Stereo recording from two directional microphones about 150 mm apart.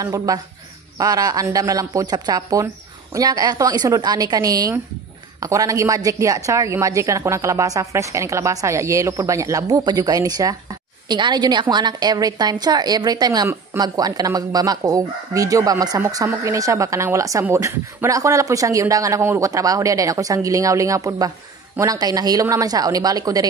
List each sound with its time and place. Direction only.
0.0 s a woman's voice: 25° right (ahead or behind)